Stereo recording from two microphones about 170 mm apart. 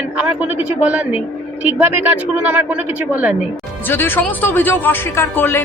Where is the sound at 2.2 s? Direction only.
10° right (ahead or behind).